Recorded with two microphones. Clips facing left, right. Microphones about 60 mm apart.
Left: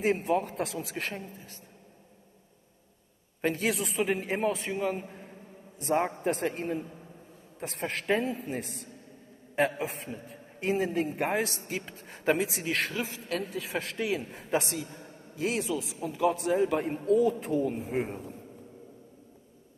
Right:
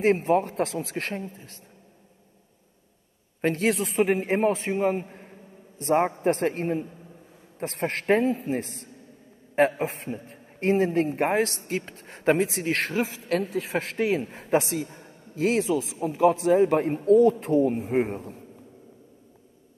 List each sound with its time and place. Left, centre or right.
0.0 s speech: right
1.0 s speech: right
3.4 s a man's voice: right
3.7 s speech: right
4.7 s a man's voice: right
8.5 s a man's voice: right
11.3 s speech: right